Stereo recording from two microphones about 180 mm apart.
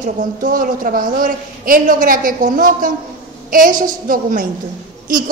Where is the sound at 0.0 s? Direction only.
50° right (ahead or behind).